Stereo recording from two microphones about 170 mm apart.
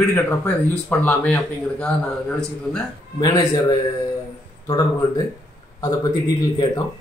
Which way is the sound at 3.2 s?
20° left (ahead or behind).